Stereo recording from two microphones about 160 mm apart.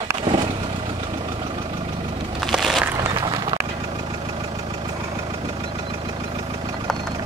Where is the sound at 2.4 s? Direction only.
Centre (ahead or behind).